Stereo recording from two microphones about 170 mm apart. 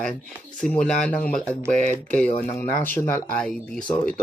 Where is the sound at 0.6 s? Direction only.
5° left (ahead or behind).